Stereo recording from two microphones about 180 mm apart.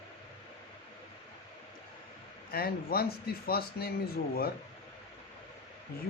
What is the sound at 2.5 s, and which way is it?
Speech, 60° left (ahead or behind).